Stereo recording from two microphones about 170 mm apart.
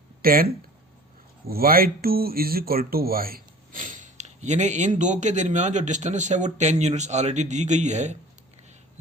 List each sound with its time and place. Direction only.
0.2 s speech: 60° right (ahead or behind)
1.5 s speech: 60° right (ahead or behind); by 8.1 s 45° right (ahead or behind)